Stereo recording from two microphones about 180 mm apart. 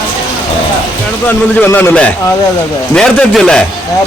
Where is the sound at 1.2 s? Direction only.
10° left (ahead or behind).